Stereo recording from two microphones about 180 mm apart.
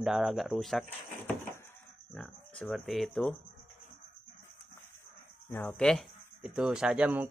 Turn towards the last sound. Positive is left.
turn(degrees=-10)  # may be behind; listen again after turning